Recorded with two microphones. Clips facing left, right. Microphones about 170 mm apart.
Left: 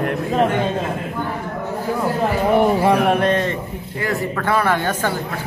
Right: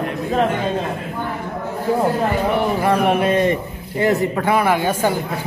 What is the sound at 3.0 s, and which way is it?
A man's voice, 5° right (ahead or behind).